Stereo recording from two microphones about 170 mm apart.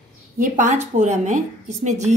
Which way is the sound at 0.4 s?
50° right (ahead or behind).